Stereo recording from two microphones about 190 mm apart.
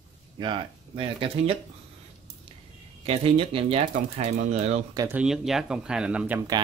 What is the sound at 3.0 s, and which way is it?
Speech, 30° right (ahead or behind).